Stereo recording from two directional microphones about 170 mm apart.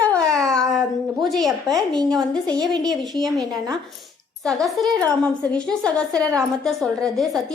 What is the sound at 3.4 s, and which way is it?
Speech, 20° right (ahead or behind).